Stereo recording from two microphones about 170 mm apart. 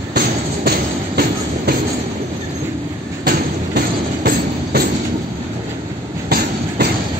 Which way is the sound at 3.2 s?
70° right (ahead or behind).